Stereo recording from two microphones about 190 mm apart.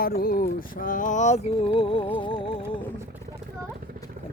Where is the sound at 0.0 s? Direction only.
50° left (ahead or behind); by 2.4 s 25° left (ahead or behind).